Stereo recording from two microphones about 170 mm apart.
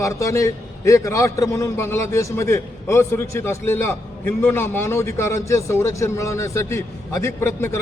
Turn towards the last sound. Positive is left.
turn(degrees=15)  # may be behind; listen again after turning